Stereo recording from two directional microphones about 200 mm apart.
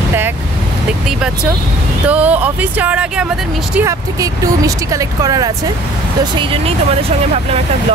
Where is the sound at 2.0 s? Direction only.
5° right (ahead or behind).